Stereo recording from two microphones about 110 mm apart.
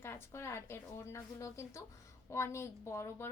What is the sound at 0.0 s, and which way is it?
A woman's voice, 20° left (ahead or behind).